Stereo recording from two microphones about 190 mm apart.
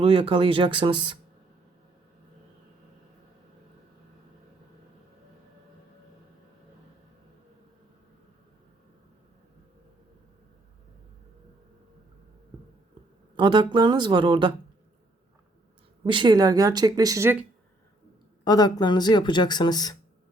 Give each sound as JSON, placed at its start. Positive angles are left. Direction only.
{"t": 0.0, "sound": "speech", "side_deg": -30}
{"t": 13.3, "sound": "speech", "side_deg": -25}
{"t": 16.0, "sound": "speech", "side_deg": -25}
{"t": 18.4, "sound": "speech", "side_deg": 20}